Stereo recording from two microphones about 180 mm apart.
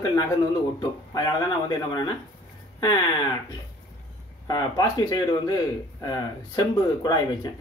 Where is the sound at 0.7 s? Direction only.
25° left (ahead or behind).